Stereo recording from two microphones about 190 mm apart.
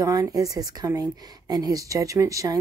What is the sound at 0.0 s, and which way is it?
A woman's voice, 20° right (ahead or behind).